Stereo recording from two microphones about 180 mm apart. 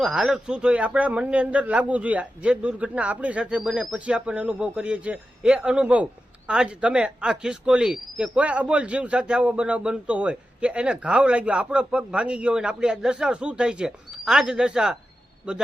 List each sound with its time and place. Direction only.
0.0 s a man's voice: centre (ahead or behind)